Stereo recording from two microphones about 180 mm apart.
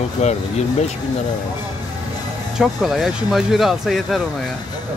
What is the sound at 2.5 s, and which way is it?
Speech, centre (ahead or behind).